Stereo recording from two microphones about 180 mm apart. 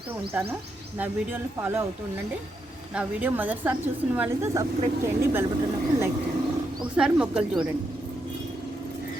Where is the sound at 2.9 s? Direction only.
5° right (ahead or behind).